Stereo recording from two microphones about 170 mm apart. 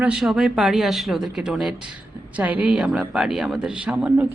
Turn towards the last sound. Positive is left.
turn(degrees=-10)  # may be behind; listen again after turning